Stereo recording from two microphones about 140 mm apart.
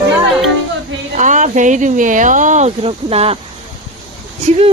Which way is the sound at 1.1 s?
60° right (ahead or behind).